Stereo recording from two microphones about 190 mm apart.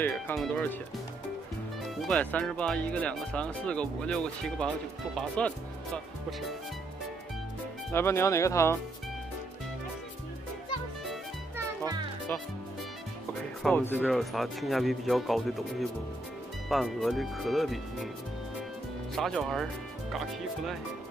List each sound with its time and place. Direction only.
0.4 s speech: 5° left (ahead or behind)
2.0 s speech: 5° left (ahead or behind)
7.9 s speech: 15° left (ahead or behind)
11.5 s music: 15° right (ahead or behind)
13.6 s speech: 5° left (ahead or behind)
19.1 s speech: centre (ahead or behind)